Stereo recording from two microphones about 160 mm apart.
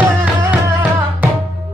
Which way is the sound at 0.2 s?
10° right (ahead or behind).